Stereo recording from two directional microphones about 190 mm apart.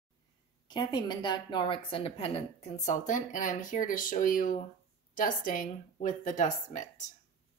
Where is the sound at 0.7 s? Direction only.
20° left (ahead or behind); by 6.9 s 40° left (ahead or behind).